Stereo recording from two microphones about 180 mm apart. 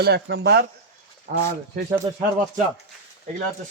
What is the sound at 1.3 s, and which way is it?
Speech, 50° right (ahead or behind).